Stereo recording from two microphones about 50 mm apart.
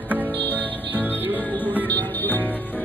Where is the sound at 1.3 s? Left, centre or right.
Left.